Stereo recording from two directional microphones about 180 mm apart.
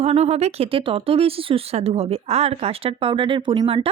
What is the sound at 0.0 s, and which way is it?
Speech, 35° right (ahead or behind).